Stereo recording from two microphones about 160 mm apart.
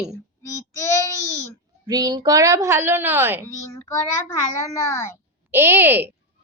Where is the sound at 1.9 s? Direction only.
25° right (ahead or behind).